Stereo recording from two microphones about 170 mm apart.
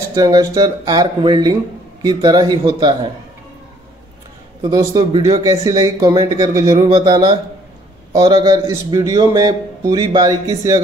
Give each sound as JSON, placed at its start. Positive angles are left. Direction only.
{"t": 0.1, "sound": "speech", "side_deg": -20}
{"t": 4.6, "sound": "speech", "side_deg": -20}
{"t": 5.4, "sound": "speech", "side_deg": -20}